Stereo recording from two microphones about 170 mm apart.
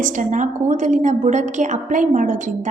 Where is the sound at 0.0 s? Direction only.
45° right (ahead or behind).